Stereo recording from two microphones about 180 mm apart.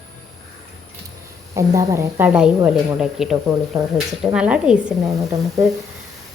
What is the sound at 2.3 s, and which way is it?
Frying, 5° right (ahead or behind).